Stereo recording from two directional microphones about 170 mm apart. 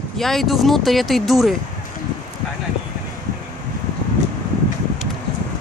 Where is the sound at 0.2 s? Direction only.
Centre (ahead or behind).